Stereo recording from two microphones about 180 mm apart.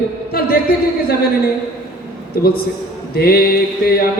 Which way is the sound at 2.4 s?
55° left (ahead or behind).